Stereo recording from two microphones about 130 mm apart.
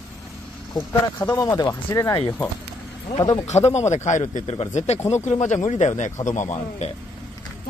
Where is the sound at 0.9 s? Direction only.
25° left (ahead or behind).